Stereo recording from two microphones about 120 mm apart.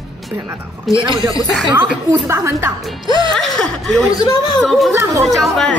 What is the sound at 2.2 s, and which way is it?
Speech, 20° right (ahead or behind).